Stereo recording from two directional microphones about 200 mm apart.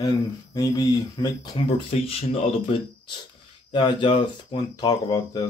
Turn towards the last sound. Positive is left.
turn(degrees=20)  # may be behind; listen again after turning